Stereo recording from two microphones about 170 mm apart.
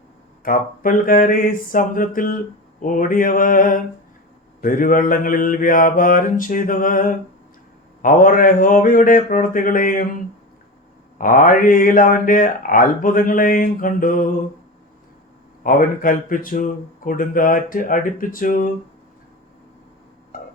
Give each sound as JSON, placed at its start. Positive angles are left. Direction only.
{"t": 0.4, "sound": "mantra", "side_deg": 55}
{"t": 2.8, "sound": "speech", "side_deg": 50}
{"t": 11.2, "sound": "speech", "side_deg": 55}
{"t": 15.6, "sound": "speech", "side_deg": 55}
{"t": 20.3, "sound": "a sound", "side_deg": 60}